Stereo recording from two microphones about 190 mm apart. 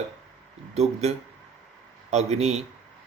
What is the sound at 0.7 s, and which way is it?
Speech, 35° right (ahead or behind).